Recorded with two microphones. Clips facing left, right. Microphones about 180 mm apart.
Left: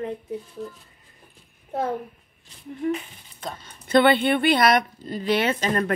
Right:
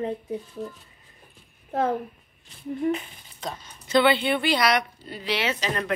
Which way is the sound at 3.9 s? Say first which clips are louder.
Left 3 dB; 50° left (ahead or behind).